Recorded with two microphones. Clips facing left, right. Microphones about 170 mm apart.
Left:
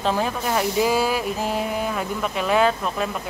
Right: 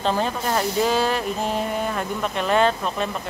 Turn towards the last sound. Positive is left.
turn(degrees=5)  # may be behind; listen again after turning